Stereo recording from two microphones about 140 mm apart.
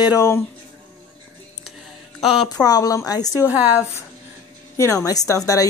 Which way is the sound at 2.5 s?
25° left (ahead or behind).